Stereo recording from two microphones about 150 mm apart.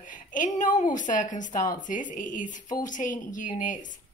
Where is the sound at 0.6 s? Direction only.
60° left (ahead or behind).